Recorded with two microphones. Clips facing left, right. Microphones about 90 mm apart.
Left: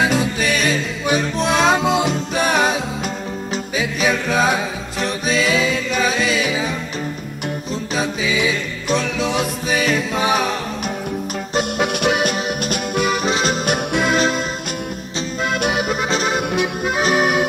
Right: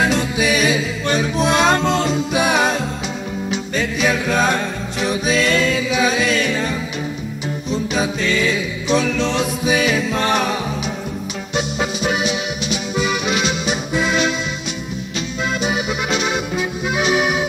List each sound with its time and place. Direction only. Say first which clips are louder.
0.0 s music: even; centre (ahead or behind)
7.7 s music: right 3 dB; centre (ahead or behind)
11.8 s music: left 3 dB; 60° left (ahead or behind); by 13.7 s 40° left (ahead or behind)
15.9 s accordion: left 1 dB; 40° left (ahead or behind)